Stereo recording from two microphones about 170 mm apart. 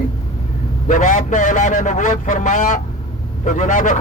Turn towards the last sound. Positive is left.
turn(degrees=50)  # may be behind; listen again after turning